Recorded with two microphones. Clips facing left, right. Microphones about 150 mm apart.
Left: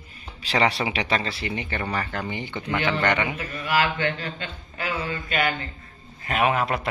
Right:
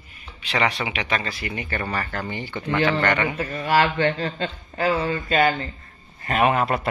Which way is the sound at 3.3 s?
30° right (ahead or behind).